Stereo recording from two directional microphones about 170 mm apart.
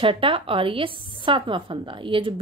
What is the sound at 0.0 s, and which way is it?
A woman's voice, 30° right (ahead or behind).